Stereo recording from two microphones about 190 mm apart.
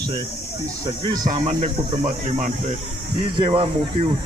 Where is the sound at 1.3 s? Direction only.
35° right (ahead or behind).